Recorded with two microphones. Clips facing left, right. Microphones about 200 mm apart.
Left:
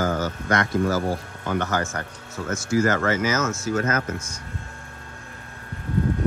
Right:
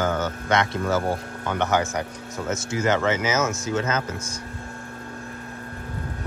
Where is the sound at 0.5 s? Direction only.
25° right (ahead or behind).